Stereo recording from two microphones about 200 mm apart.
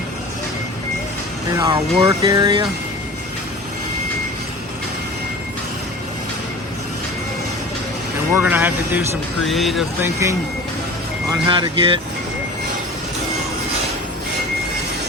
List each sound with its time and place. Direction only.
1.5 s speech: 20° right (ahead or behind)
8.4 s speech: 10° right (ahead or behind)
9.4 s speech: centre (ahead or behind)
10.0 s speech: 15° right (ahead or behind)